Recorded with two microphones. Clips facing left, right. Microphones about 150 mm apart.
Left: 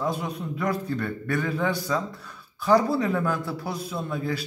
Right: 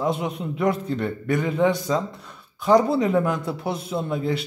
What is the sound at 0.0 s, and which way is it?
A man's voice, 25° right (ahead or behind).